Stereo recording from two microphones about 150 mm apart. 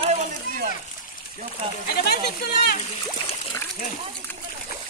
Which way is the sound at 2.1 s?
90° left.